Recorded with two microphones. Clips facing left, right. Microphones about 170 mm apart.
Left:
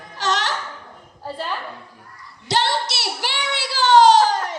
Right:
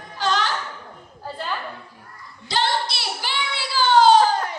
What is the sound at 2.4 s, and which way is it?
Female singing, 75° left (ahead or behind).